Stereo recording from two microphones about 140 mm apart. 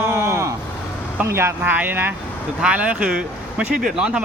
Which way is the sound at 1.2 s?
20° right (ahead or behind).